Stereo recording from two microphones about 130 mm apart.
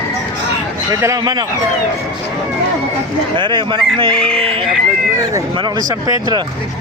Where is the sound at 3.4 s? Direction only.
40° right (ahead or behind).